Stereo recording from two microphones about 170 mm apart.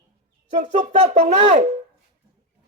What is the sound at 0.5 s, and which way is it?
Speech, 45° right (ahead or behind).